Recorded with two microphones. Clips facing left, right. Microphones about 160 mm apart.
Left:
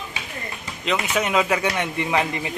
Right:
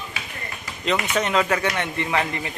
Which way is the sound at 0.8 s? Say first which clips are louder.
Even; 5° left (ahead or behind).